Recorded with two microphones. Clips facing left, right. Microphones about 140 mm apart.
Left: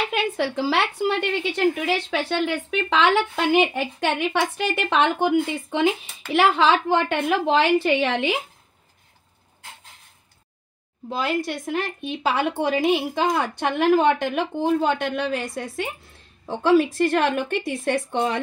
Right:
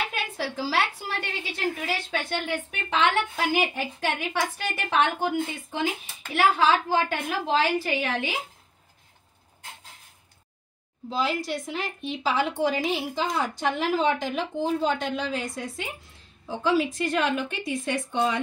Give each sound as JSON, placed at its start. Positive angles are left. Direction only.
{"t": 0.1, "sound": "a woman's voice", "side_deg": 65}
{"t": 2.0, "sound": "a woman's voice", "side_deg": 85}
{"t": 3.7, "sound": "a woman's voice", "side_deg": 75}
{"t": 11.1, "sound": "a woman's voice", "side_deg": 55}